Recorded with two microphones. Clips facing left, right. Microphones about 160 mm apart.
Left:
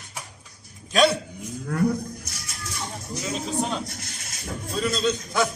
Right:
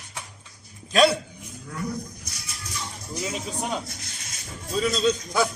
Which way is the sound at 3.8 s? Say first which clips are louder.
Left 2 dB; 60° left (ahead or behind).